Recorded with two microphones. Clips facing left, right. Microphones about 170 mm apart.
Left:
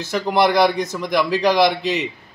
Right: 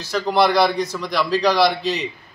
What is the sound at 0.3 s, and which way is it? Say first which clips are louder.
A man's voice: left 1 dB; 15° left (ahead or behind).